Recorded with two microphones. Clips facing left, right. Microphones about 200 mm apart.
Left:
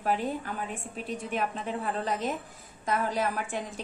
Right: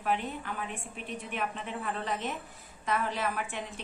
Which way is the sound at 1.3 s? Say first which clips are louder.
Left 4 dB; 35° left (ahead or behind).